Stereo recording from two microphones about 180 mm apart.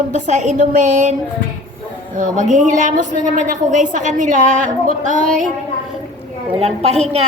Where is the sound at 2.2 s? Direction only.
50° right (ahead or behind).